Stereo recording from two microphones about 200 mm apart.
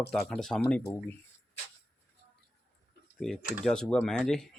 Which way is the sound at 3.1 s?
Centre (ahead or behind).